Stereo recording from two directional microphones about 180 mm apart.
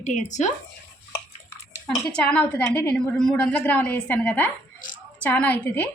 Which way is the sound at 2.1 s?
5° left (ahead or behind).